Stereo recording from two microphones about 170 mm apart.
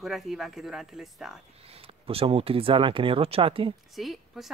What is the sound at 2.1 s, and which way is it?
Speech, 35° right (ahead or behind).